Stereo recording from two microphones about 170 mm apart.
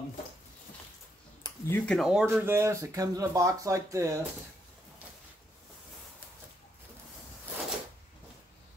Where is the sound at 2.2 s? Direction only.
15° right (ahead or behind).